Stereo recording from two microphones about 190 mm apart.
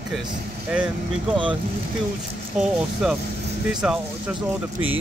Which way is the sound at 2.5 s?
5° right (ahead or behind).